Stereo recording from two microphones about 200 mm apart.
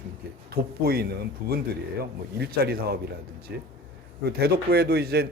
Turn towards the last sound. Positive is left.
turn(degrees=-55)  # may be behind; listen again after turning